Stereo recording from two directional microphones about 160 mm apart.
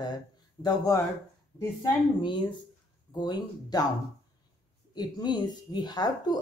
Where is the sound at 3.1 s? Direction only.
25° left (ahead or behind).